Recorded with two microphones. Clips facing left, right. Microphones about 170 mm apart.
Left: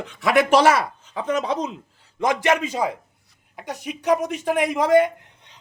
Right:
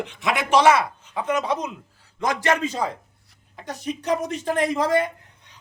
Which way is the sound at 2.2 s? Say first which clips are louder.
Left 2 dB; 20° left (ahead or behind).